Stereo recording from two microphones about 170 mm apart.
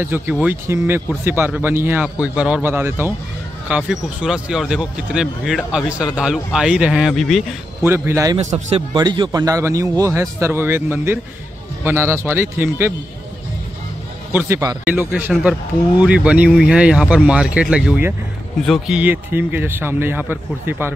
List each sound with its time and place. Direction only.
0.0 s speech: 10° right (ahead or behind)
7.8 s speech: 15° right (ahead or behind)
8.4 s a man's voice: 45° right (ahead or behind)
8.9 s a man's voice: 25° right (ahead or behind); by 12.9 s 10° right (ahead or behind)
14.3 s a man's voice: 20° right (ahead or behind)